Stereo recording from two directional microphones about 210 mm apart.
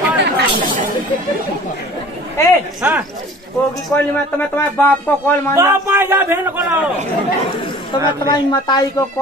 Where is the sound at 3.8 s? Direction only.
5° left (ahead or behind).